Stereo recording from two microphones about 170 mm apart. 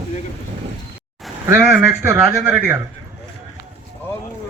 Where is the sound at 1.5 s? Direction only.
15° right (ahead or behind).